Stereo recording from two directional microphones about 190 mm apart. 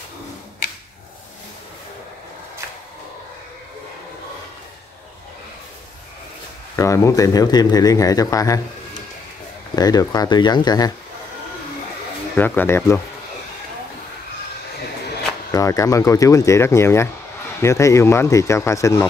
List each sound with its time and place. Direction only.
6.8 s a man's voice: 15° left (ahead or behind)
9.8 s speech: 20° left (ahead or behind)
12.4 s a man's voice: 10° left (ahead or behind)
15.5 s a man's voice: 15° left (ahead or behind)